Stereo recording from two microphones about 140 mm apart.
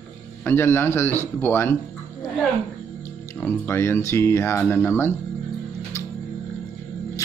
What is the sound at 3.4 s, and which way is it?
A man's voice, 15° left (ahead or behind).